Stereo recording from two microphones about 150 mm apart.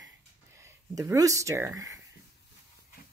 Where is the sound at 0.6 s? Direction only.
20° right (ahead or behind).